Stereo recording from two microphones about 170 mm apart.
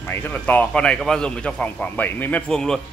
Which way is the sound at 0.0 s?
10° left (ahead or behind).